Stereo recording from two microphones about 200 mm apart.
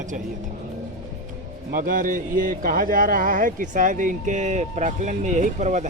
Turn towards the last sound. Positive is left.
turn(degrees=-35)  # may be behind; listen again after turning